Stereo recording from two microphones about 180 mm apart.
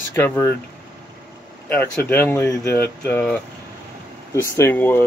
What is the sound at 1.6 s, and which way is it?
Speech, 10° left (ahead or behind).